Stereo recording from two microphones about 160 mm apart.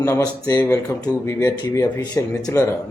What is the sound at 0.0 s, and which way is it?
Speech, 20° left (ahead or behind).